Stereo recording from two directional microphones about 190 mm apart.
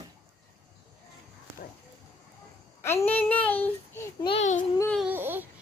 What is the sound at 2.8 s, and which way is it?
Child singing, 15° left (ahead or behind).